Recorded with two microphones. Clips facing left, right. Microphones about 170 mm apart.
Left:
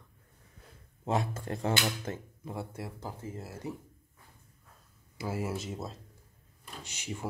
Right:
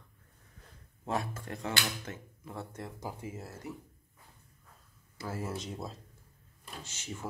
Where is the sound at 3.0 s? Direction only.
10° right (ahead or behind).